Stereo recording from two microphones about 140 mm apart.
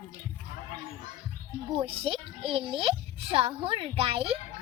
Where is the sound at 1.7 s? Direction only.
40° right (ahead or behind).